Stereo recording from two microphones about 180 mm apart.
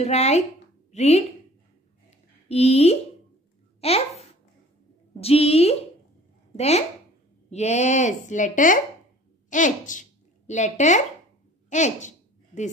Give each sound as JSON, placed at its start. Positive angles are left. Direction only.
{"t": 0.0, "sound": "a woman's voice", "side_deg": 35}
{"t": 2.0, "sound": "a sound", "side_deg": 35}
{"t": 3.8, "sound": "a child's voice", "side_deg": 35}